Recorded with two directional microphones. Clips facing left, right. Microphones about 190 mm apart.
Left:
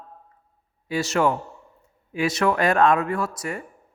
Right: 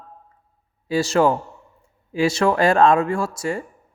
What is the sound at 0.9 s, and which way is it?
Speech, 30° right (ahead or behind).